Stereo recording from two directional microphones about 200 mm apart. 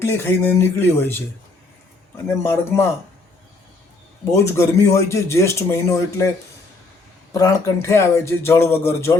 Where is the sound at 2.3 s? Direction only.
15° left (ahead or behind).